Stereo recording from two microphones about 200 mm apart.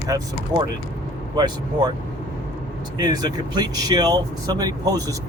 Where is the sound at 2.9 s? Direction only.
20° right (ahead or behind).